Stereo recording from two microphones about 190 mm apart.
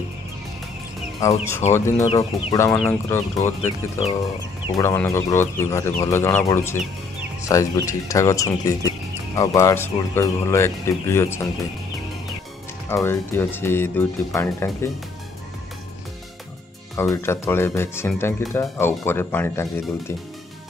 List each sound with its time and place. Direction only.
1.2 s speech: 15° left (ahead or behind)
4.6 s speech: 15° left (ahead or behind)
12.9 s speech: 10° left (ahead or behind)
16.9 s speech: 15° left (ahead or behind)